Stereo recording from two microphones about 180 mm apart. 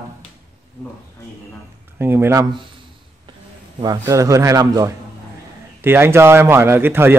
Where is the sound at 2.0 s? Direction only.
15° right (ahead or behind).